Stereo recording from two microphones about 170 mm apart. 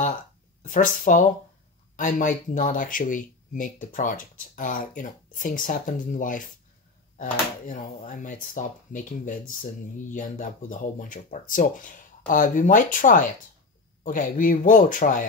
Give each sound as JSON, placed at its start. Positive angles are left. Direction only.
{"t": 0.7, "sound": "speech", "side_deg": 50}